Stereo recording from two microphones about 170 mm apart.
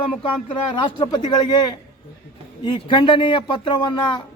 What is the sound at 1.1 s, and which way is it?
A man's voice, 25° left (ahead or behind).